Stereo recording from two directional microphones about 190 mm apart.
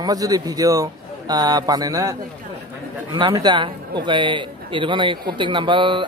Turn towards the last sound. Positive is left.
turn(degrees=-25)  # may be behind; listen again after turning